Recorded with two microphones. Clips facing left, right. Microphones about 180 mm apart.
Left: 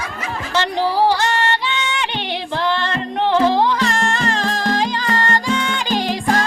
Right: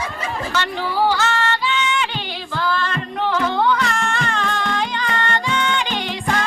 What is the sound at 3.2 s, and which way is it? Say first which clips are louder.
Music: left 4 dB; 30° left (ahead or behind).